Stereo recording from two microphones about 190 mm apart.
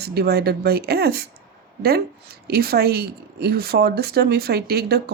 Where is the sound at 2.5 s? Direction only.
55° right (ahead or behind).